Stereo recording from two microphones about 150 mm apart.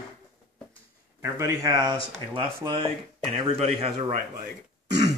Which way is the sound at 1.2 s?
20° right (ahead or behind).